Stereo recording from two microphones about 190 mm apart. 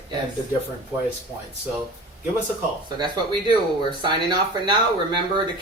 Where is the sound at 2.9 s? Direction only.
25° right (ahead or behind).